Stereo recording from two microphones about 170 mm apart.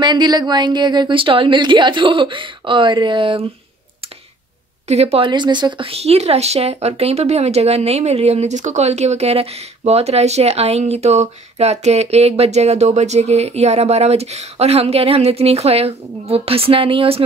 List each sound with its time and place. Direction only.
0.0 s a woman's voice: 25° right (ahead or behind)
4.8 s speech: 40° right (ahead or behind)